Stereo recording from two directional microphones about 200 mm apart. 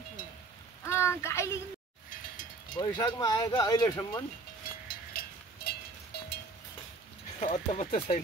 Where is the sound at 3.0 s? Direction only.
20° left (ahead or behind).